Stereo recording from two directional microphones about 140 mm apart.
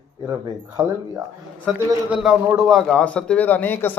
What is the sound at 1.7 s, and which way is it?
A man's voice, centre (ahead or behind).